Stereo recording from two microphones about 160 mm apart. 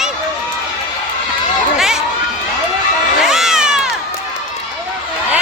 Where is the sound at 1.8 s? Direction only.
5° right (ahead or behind).